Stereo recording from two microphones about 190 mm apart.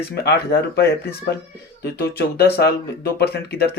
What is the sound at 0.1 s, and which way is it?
Speech, 60° left (ahead or behind).